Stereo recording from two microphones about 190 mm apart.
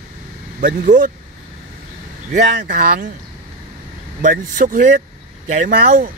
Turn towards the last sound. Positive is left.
turn(degrees=-45)  # may be behind; listen again after turning